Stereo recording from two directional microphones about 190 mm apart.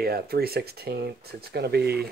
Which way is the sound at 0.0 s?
55° right (ahead or behind).